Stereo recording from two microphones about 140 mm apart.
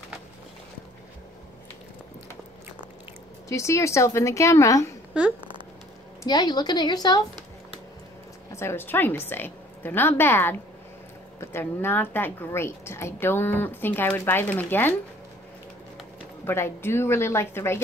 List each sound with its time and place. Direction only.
3.4 s a woman's voice: 20° left (ahead or behind)
6.2 s a woman's voice: 30° left (ahead or behind)
8.5 s a woman's voice: 20° left (ahead or behind)
16.4 s a woman's voice: 15° left (ahead or behind)